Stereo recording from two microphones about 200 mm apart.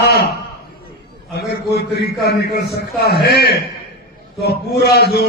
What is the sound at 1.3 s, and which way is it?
A man's voice, 55° left (ahead or behind).